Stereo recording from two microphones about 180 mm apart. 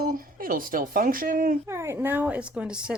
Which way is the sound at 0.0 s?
50° right (ahead or behind).